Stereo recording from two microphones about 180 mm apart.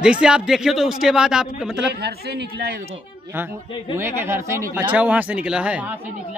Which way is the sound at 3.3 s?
15° right (ahead or behind).